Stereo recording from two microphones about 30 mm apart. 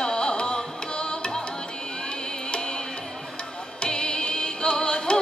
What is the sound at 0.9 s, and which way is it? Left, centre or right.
Music, left.